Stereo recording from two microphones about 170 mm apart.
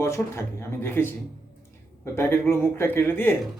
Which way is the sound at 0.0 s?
15° left (ahead or behind).